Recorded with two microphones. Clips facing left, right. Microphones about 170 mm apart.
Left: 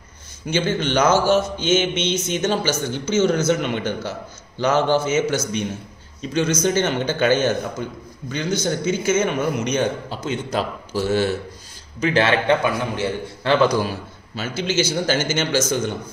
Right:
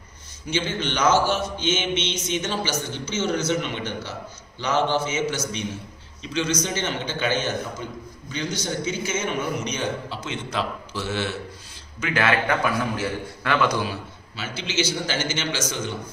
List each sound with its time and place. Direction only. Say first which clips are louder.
0.5 s a man's voice: left 5 dB; 45° left (ahead or behind); by 13.7 s 30° left (ahead or behind)
13.7 s a man's voice: left 4 dB; 40° left (ahead or behind)